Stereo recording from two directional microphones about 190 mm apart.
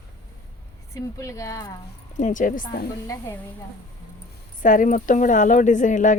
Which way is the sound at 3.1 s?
15° left (ahead or behind).